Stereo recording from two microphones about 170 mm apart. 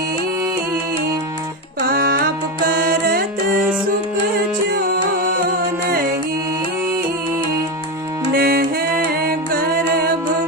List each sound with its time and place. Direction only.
1.9 s music: 60° right (ahead or behind)
8.3 s music: 65° right (ahead or behind)